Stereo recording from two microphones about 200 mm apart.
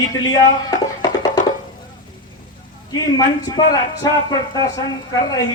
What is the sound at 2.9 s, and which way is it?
Speech, 20° left (ahead or behind).